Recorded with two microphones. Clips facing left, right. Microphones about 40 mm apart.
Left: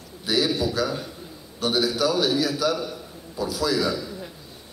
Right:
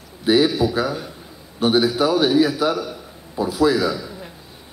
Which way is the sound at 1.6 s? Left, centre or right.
Right.